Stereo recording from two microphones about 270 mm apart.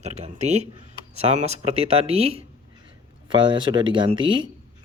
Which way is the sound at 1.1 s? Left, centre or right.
Right.